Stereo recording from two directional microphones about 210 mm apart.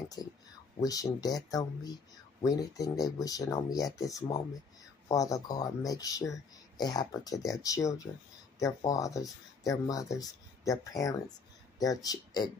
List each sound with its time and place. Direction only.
0.7 s speech: 15° left (ahead or behind)